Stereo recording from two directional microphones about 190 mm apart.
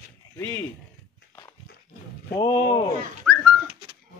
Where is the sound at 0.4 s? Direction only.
10° left (ahead or behind).